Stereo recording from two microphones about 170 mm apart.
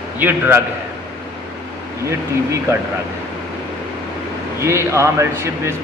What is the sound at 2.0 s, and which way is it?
Speech, 15° right (ahead or behind).